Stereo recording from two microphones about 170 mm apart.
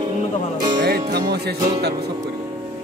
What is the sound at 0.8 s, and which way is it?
Music, 70° right (ahead or behind).